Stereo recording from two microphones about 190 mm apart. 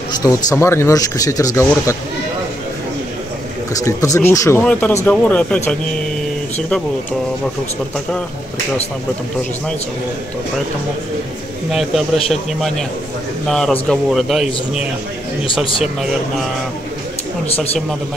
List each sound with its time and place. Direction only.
0.2 s speech: 15° left (ahead or behind)
3.7 s speech: 15° left (ahead or behind)
11.7 s a man's voice: centre (ahead or behind)